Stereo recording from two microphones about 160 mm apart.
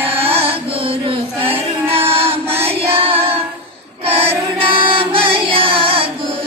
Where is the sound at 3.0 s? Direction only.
35° right (ahead or behind).